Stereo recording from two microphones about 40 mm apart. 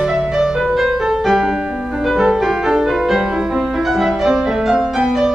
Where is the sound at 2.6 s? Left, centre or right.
Centre.